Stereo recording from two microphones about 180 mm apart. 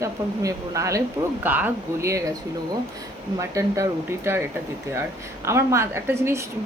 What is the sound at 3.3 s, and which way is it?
Speech, 15° right (ahead or behind).